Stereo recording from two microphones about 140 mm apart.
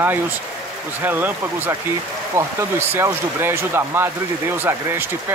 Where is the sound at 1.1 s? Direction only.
15° right (ahead or behind).